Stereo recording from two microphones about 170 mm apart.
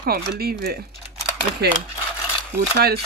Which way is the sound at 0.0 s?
65° right (ahead or behind).